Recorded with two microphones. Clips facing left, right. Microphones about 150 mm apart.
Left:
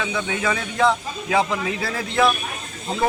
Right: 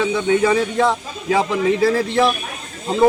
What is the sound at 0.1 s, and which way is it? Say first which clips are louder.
Speech: right 8 dB; 30° right (ahead or behind).